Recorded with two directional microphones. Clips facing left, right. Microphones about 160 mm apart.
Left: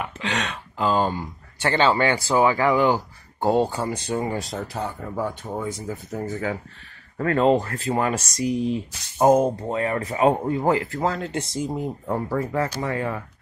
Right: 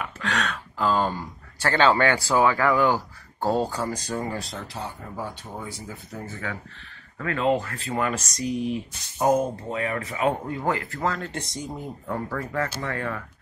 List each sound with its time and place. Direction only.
0.2 s speech: 25° left (ahead or behind)
1.7 s speech: 10° left (ahead or behind)
3.6 s speech: 25° left (ahead or behind)
4.5 s speech: 45° left (ahead or behind)
5.6 s speech: 45° left (ahead or behind); by 11.7 s 30° left (ahead or behind)
12.4 s speech: 15° left (ahead or behind)